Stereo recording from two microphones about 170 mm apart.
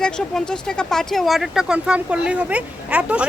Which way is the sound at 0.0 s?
5° left (ahead or behind).